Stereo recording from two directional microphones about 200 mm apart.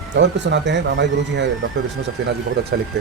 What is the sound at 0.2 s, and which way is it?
Speech, 60° right (ahead or behind).